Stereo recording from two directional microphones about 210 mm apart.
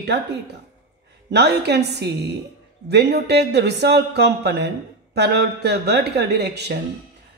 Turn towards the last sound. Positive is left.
turn(degrees=-50)  # may be behind; listen again after turning